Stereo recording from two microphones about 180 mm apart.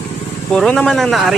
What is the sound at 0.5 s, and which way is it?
Speech, 5° left (ahead or behind).